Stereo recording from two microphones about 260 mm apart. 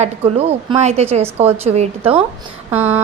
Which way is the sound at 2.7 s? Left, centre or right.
Centre.